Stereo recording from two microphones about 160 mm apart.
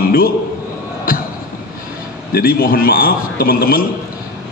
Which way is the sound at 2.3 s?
70° left (ahead or behind).